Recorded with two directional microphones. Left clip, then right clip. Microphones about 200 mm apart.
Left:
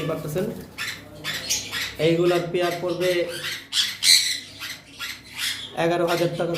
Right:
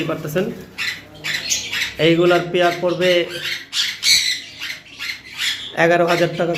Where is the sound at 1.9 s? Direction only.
35° right (ahead or behind).